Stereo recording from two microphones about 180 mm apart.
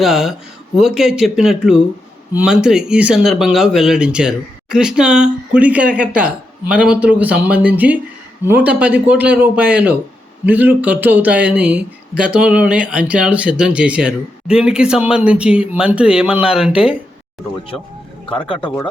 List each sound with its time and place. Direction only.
0.0 s a man's voice: centre (ahead or behind)
18.3 s speech: 30° left (ahead or behind)